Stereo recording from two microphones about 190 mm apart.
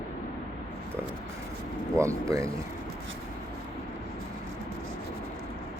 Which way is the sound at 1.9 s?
15° right (ahead or behind).